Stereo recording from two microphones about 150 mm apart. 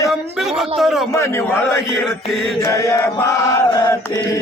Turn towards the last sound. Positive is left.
turn(degrees=20)  # may be behind; listen again after turning